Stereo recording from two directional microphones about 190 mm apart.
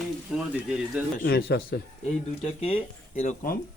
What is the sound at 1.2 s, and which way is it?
Speech, 55° left (ahead or behind).